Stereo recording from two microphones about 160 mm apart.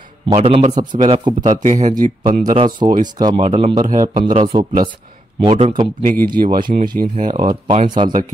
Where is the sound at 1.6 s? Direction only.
50° right (ahead or behind).